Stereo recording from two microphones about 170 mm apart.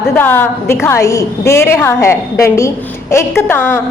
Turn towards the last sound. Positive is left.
turn(degrees=15)  # may be behind; listen again after turning